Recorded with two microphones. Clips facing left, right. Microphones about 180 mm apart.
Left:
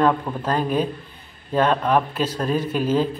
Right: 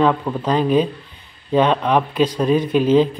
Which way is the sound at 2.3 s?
15° right (ahead or behind).